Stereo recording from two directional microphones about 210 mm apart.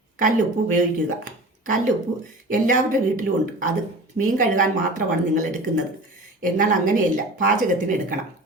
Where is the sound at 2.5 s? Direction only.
40° right (ahead or behind).